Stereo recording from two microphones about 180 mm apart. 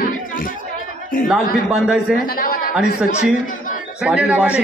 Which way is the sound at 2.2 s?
55° left (ahead or behind).